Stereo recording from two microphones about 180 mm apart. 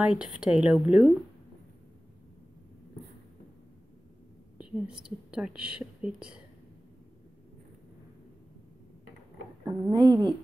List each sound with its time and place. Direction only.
0.0 s a woman's voice: 5° right (ahead or behind)
4.8 s a woman's voice: 5° right (ahead or behind)
9.7 s a woman's voice: 20° right (ahead or behind)